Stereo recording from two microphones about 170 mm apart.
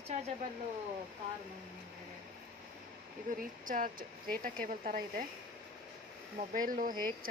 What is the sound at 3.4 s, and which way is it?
Speech, 55° right (ahead or behind).